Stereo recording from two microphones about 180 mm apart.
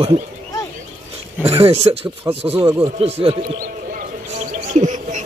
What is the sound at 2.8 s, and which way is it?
Speech, 35° right (ahead or behind).